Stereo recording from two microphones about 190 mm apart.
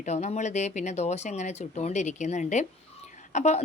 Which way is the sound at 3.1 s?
40° left (ahead or behind).